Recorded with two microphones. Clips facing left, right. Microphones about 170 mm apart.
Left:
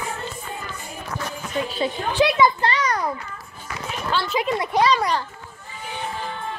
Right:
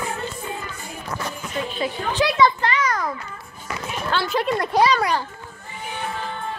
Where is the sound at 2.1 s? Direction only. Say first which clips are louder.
Left 1 dB; 15° left (ahead or behind).